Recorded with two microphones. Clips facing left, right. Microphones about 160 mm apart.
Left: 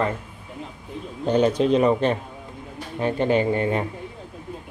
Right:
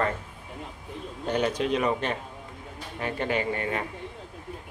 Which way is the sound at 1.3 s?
30° left (ahead or behind).